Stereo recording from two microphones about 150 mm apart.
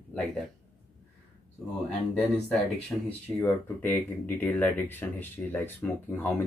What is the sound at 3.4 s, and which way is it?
Speech, 15° left (ahead or behind).